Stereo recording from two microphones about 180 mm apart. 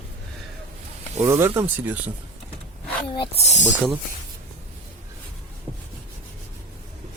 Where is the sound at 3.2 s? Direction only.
35° left (ahead or behind).